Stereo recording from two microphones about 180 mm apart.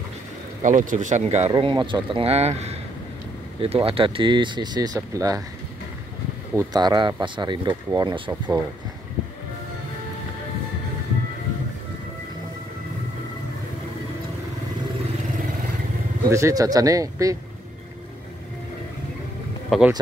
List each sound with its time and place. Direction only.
0.6 s speech: 45° right (ahead or behind)
1.5 s speech: 25° right (ahead or behind)
6.5 s speech: 20° right (ahead or behind)
16.3 s speech: 15° right (ahead or behind)
19.7 s speech: centre (ahead or behind)